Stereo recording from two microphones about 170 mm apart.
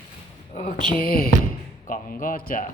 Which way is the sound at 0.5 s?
40° left (ahead or behind).